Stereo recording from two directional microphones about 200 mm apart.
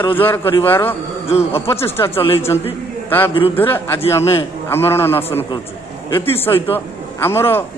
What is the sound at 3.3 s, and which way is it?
Speech, 25° left (ahead or behind).